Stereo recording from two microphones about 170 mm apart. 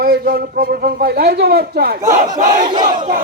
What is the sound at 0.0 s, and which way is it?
A man's voice, 65° right (ahead or behind).